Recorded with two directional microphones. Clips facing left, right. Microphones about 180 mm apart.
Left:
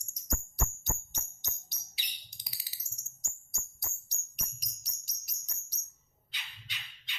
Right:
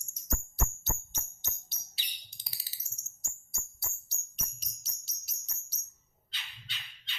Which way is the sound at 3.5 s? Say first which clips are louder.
Right 1 dB; 15° left (ahead or behind).